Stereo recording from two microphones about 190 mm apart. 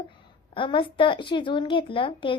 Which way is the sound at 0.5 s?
25° left (ahead or behind).